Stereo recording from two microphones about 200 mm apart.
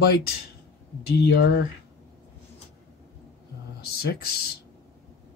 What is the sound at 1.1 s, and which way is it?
Speech, 60° left (ahead or behind).